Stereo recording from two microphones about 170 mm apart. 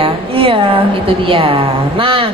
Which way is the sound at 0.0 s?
30° right (ahead or behind).